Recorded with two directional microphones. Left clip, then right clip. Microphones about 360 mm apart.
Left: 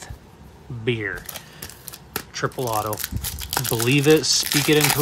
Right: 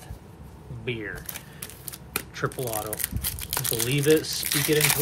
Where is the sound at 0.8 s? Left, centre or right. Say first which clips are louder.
Left 7 dB; centre.